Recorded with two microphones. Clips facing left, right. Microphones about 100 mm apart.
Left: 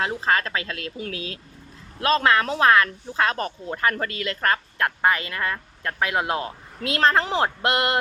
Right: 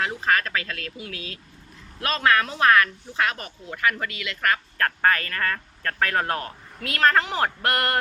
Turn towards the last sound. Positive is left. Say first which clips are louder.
# left 2 dB
turn(degrees=20)  # may be behind; listen again after turning